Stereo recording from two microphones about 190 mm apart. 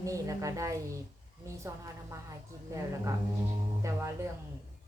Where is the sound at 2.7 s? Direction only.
15° right (ahead or behind).